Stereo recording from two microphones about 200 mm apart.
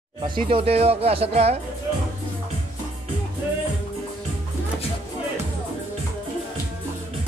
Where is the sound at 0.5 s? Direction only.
30° right (ahead or behind).